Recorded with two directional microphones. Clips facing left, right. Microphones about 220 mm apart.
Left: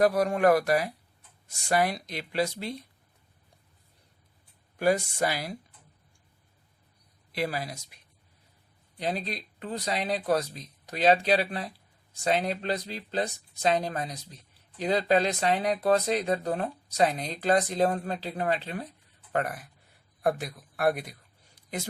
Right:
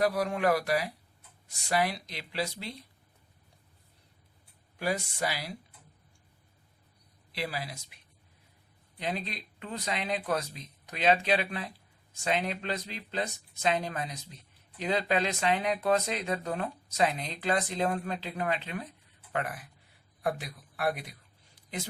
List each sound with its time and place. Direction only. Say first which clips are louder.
0.0 s speech: left 5 dB; 45° left (ahead or behind)
4.8 s speech: left 7 dB; 50° left (ahead or behind)
7.3 s speech: left 5 dB; 45° left (ahead or behind)
9.0 s speech: left 3 dB; 35° left (ahead or behind)